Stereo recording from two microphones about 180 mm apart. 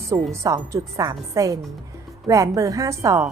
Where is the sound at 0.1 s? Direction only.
20° right (ahead or behind).